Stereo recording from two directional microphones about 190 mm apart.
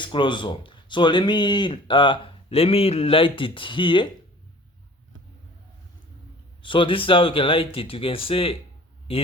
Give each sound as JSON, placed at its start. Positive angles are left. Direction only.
{"t": 0.0, "sound": "speech", "side_deg": 25}
{"t": 6.6, "sound": "speech", "side_deg": 25}